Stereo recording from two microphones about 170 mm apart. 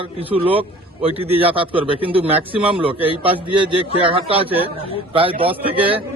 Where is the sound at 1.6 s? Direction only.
30° right (ahead or behind).